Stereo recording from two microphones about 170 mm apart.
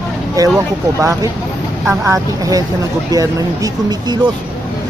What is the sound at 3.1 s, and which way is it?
Speech, 20° right (ahead or behind).